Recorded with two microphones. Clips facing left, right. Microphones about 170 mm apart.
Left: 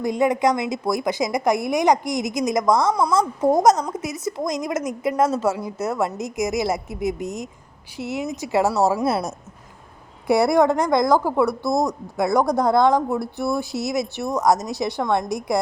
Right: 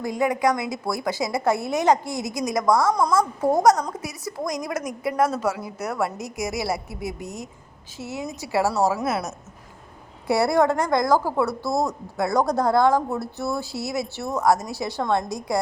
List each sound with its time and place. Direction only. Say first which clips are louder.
0.0 s a woman's voice: left 3 dB; 20° left (ahead or behind)
2.9 s a woman's voice: left 1 dB; centre (ahead or behind)
3.2 s a woman's voice: left 2 dB; 20° left (ahead or behind)
10.2 s speech: left 3 dB; 15° left (ahead or behind)